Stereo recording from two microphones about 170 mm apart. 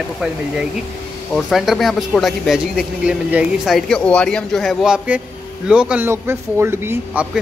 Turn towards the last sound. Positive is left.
turn(degrees=-10)  # may be behind; listen again after turning